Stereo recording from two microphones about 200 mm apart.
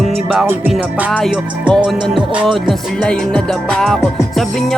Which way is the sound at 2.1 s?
Centre (ahead or behind).